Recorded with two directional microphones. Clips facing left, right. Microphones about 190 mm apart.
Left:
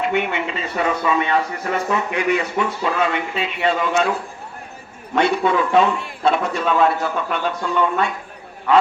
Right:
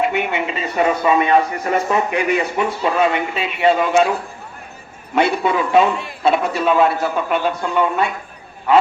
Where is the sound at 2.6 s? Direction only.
15° right (ahead or behind).